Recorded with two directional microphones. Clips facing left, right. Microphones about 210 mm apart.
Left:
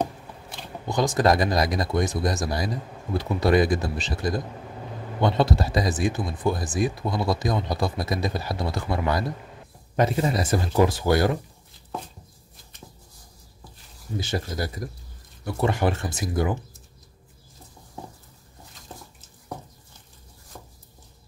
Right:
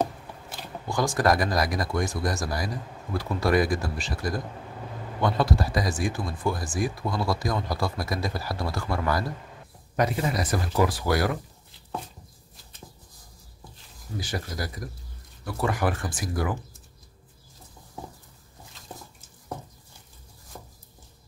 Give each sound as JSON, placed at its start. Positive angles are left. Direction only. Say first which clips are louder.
{"t": 0.8, "sound": "speech", "louder": "left 3 dB", "side_deg": 20}
{"t": 14.1, "sound": "speech", "louder": "left 4 dB", "side_deg": 25}
{"t": 20.5, "sound": "a sound", "louder": "even", "side_deg": -5}